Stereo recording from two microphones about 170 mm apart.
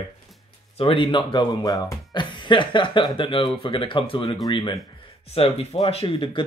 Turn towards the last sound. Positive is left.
turn(degrees=30)  # may be behind; listen again after turning